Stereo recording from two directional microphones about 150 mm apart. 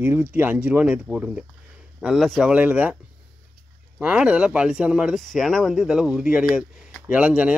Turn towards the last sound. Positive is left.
turn(degrees=-10)  # may be behind; listen again after turning